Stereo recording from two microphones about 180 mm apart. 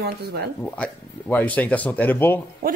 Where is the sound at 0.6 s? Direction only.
10° left (ahead or behind).